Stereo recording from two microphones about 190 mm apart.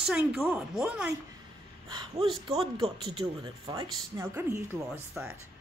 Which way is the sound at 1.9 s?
25° right (ahead or behind).